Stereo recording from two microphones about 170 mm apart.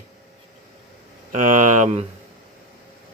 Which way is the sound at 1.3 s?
45° right (ahead or behind).